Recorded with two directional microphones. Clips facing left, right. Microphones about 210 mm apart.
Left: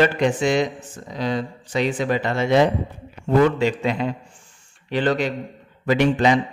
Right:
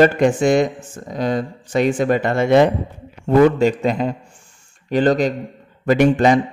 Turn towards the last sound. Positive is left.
turn(degrees=-45)  # may be behind; listen again after turning